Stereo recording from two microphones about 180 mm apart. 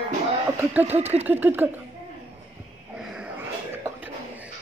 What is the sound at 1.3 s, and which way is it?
Speech, 10° right (ahead or behind).